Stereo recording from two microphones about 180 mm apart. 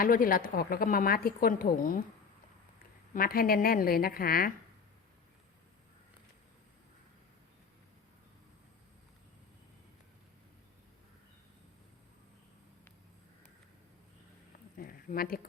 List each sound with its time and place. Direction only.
0.0 s speech: 50° left (ahead or behind)
3.1 s speech: 55° left (ahead or behind)
14.8 s a sound: 55° left (ahead or behind)